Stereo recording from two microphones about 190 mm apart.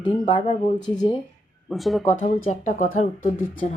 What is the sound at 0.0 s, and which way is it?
Speech, 25° left (ahead or behind).